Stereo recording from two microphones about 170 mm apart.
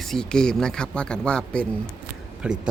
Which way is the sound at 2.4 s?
5° right (ahead or behind).